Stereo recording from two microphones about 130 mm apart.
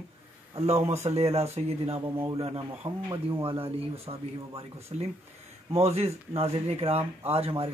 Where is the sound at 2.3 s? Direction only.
50° right (ahead or behind).